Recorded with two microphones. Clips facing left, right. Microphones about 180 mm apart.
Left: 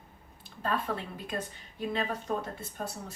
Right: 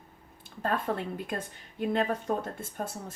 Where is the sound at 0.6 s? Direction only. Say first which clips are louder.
Right 2 dB; 50° right (ahead or behind).